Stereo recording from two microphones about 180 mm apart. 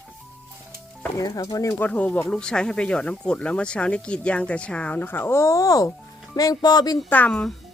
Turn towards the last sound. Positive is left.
turn(degrees=5)  # may be behind; listen again after turning